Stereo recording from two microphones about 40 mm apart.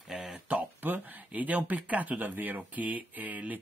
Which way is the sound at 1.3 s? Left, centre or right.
Right.